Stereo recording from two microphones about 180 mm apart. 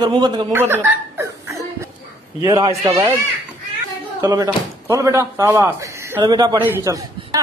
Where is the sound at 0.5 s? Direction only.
10° right (ahead or behind).